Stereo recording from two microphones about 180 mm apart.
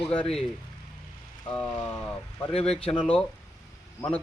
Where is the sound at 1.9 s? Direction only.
10° left (ahead or behind).